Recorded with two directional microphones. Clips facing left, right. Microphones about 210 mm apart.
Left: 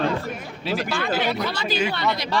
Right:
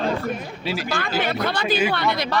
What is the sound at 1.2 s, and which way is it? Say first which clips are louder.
Speech: right 1 dB; 55° right (ahead or behind).